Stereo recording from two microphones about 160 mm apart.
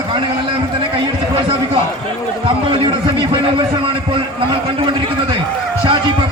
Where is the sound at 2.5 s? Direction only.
30° right (ahead or behind).